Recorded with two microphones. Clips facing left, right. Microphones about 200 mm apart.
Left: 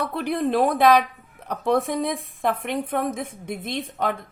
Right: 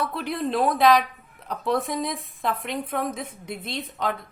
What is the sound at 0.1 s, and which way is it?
A woman's voice, 50° left (ahead or behind).